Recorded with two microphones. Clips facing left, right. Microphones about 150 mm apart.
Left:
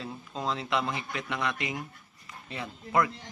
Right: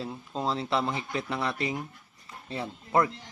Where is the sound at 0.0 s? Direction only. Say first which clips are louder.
Right 3 dB; 30° right (ahead or behind).